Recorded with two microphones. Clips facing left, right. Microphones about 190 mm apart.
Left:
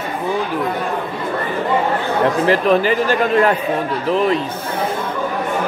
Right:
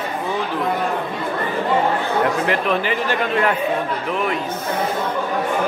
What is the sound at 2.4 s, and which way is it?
Speech, 35° left (ahead or behind).